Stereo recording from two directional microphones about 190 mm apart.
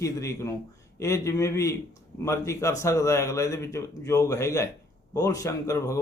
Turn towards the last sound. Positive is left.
turn(degrees=15)  # may be behind; listen again after turning